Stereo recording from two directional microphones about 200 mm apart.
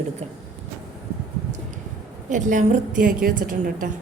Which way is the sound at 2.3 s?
40° right (ahead or behind).